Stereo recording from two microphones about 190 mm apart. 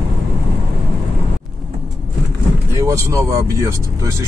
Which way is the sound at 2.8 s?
15° right (ahead or behind).